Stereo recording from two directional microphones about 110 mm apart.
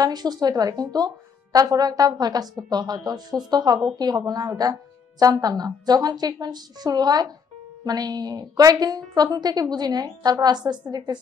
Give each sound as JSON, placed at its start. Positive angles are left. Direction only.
{"t": 0.0, "sound": "a woman's voice", "side_deg": -40}